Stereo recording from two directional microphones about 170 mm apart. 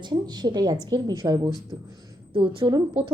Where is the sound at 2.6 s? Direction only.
25° right (ahead or behind).